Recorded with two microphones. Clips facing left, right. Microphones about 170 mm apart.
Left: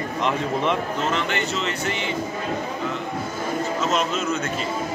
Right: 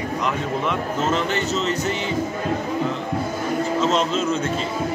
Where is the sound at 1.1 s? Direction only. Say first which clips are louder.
Right 3 dB; 40° right (ahead or behind).